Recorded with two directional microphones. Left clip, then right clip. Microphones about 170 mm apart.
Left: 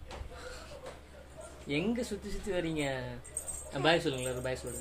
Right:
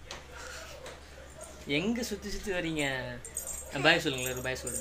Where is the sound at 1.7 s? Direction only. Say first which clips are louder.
Right 2 dB; 5° right (ahead or behind).